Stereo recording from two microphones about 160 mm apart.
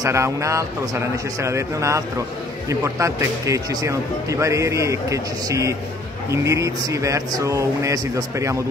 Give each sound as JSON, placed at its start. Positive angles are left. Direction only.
{"t": 0.0, "sound": "speech", "side_deg": -20}